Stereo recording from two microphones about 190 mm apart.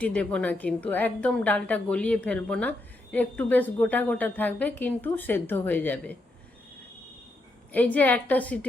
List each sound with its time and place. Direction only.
0.0 s a woman's voice: 5° left (ahead or behind)
7.7 s a woman's voice: 10° left (ahead or behind)